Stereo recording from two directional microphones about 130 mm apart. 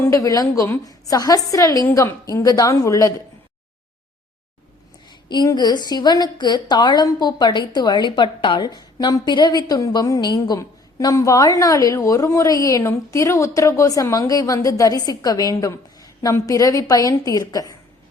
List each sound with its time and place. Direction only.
0.0 s a woman's voice: 25° left (ahead or behind)
5.0 s a woman's voice: 30° left (ahead or behind)